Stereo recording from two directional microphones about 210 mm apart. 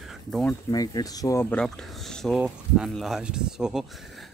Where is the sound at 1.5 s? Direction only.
5° left (ahead or behind).